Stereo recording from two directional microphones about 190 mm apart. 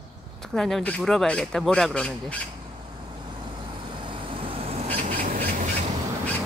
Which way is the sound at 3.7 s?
25° right (ahead or behind).